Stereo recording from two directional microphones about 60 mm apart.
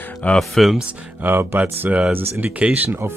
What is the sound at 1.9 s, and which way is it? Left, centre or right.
Speech, right.